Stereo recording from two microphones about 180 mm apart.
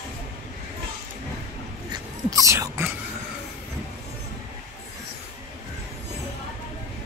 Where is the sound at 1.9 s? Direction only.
20° right (ahead or behind).